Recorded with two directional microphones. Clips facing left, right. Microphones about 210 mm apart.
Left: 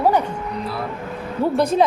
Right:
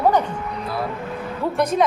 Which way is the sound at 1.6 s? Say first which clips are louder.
Left 1 dB; 25° left (ahead or behind).